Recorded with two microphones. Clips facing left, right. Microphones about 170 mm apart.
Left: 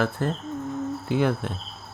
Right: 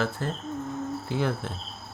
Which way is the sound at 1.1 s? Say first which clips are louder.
Left 6 dB; 60° left (ahead or behind).